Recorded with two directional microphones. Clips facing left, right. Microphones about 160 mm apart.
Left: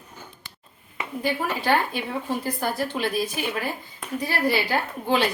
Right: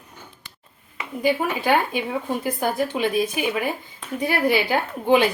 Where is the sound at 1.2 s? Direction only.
15° right (ahead or behind).